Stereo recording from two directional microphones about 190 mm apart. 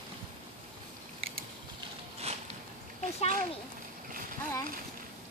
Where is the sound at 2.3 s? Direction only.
35° right (ahead or behind).